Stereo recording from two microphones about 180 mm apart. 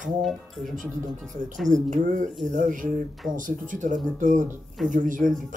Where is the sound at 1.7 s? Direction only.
45° right (ahead or behind).